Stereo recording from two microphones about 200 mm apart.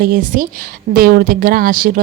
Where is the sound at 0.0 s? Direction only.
45° right (ahead or behind).